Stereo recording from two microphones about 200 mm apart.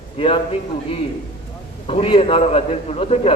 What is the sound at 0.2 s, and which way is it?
Speech, 25° left (ahead or behind).